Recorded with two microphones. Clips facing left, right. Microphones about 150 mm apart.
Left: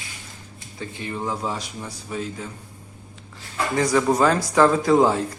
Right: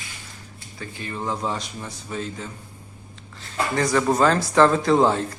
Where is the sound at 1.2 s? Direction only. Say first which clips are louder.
Right 1 dB; 5° left (ahead or behind).